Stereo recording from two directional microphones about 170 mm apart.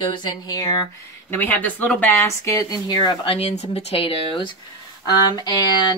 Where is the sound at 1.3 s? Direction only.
10° left (ahead or behind).